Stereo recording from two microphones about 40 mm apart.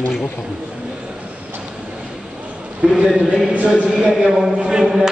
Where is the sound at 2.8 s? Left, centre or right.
Centre.